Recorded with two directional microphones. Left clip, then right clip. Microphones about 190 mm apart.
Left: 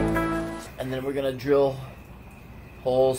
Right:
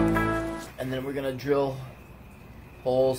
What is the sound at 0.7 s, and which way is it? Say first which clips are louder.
Speech: left 5 dB; 15° right (ahead or behind).